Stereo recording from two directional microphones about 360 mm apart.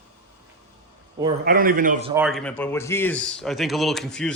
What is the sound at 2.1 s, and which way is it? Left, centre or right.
Speech, centre.